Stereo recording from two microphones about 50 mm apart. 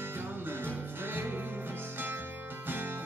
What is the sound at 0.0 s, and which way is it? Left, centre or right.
Music, right.